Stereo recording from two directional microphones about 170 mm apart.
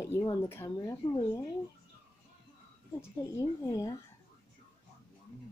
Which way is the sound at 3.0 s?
20° left (ahead or behind).